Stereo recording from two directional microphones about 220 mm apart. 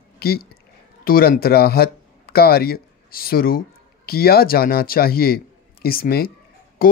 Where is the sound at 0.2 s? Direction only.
45° left (ahead or behind).